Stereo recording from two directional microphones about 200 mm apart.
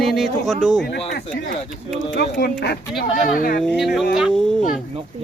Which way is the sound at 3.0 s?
45° left (ahead or behind).